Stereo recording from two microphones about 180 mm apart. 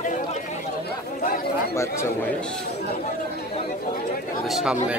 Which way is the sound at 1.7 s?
15° left (ahead or behind).